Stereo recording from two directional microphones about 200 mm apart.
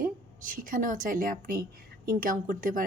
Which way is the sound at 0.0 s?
45° right (ahead or behind).